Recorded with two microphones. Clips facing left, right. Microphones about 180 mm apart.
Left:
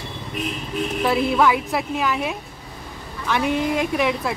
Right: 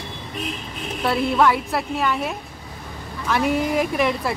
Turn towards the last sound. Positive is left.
turn(degrees=0)  # may be behind; listen again after turning